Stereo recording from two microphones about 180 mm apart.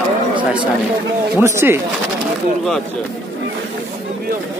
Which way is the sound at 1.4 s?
15° right (ahead or behind).